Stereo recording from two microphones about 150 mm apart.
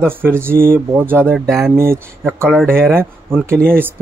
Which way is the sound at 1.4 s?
Centre (ahead or behind).